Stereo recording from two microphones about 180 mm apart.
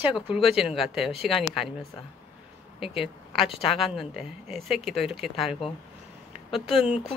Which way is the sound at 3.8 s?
Centre (ahead or behind).